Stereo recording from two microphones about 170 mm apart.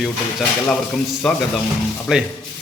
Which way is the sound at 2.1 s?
5° right (ahead or behind).